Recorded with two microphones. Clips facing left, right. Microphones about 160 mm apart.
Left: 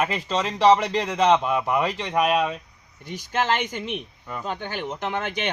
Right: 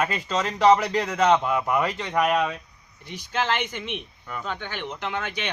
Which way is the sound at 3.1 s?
45° left (ahead or behind).